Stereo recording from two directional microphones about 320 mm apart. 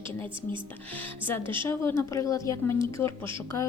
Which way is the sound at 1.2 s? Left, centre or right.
Centre.